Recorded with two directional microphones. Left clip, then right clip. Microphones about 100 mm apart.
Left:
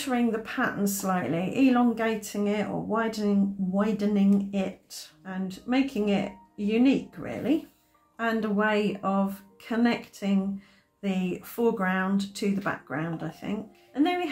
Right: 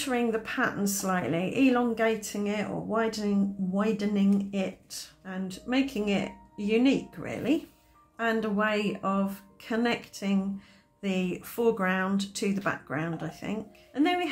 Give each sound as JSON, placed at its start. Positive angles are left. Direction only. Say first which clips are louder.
{"t": 0.0, "sound": "speech", "louder": "even", "side_deg": -25}
{"t": 8.2, "sound": "speech", "louder": "left 1 dB", "side_deg": -20}